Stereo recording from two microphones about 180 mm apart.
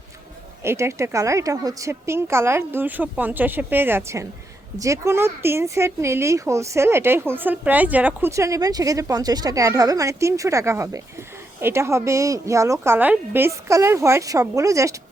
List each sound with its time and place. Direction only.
0.6 s speech: 15° right (ahead or behind)